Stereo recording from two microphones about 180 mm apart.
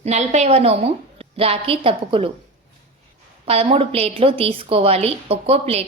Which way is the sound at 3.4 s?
30° right (ahead or behind).